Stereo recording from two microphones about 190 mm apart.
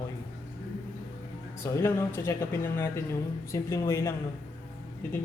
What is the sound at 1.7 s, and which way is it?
A man's voice, 10° left (ahead or behind).